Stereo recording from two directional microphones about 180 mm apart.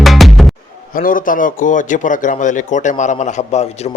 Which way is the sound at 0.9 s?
50° left (ahead or behind).